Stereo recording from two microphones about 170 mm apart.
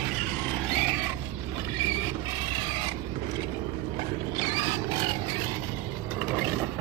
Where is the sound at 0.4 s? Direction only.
5° left (ahead or behind).